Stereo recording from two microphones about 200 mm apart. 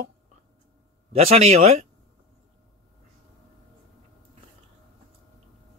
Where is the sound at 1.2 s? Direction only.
30° right (ahead or behind).